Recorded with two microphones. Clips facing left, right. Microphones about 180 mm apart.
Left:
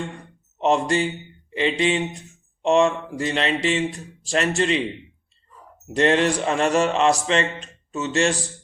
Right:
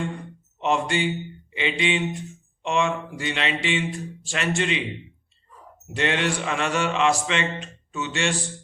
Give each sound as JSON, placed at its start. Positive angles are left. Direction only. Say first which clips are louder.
{"t": 0.6, "sound": "a man's voice", "louder": "left 3 dB", "side_deg": 35}
{"t": 5.9, "sound": "a man's voice", "louder": "left 6 dB", "side_deg": 35}